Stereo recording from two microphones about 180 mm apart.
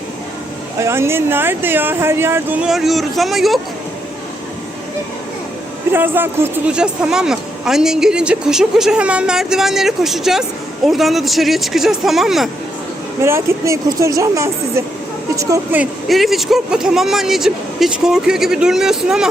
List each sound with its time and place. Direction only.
0.8 s speech: 15° right (ahead or behind)
2.6 s speech: centre (ahead or behind)
5.9 s speech: 10° right (ahead or behind)
13.2 s speech: 15° right (ahead or behind)
15.8 s speech: centre (ahead or behind)